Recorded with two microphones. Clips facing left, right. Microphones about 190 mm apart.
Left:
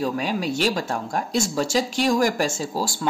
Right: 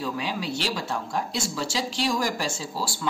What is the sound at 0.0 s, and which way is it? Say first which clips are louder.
Speech: left 5 dB; 45° left (ahead or behind).